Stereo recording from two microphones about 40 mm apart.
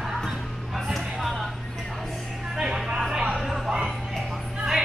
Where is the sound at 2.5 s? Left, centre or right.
Centre.